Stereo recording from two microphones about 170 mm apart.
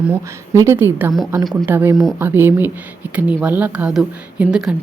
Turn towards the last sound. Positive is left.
turn(degrees=-5)  # may be behind; listen again after turning